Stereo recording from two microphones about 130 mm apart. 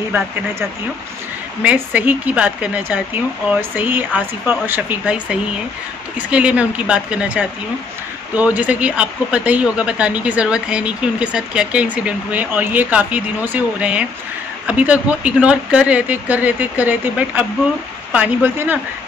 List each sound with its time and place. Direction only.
1.6 s speech: 10° right (ahead or behind)
18.1 s speech: 15° right (ahead or behind)